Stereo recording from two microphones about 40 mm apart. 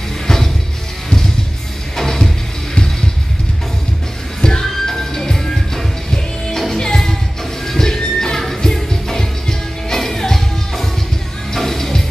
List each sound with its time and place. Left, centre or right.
2.0 s music: centre
4.4 s music: centre